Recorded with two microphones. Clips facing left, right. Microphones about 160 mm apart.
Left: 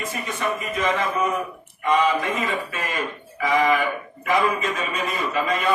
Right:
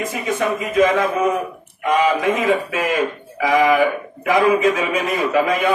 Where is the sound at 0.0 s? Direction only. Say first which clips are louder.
Right 6 dB; 85° right.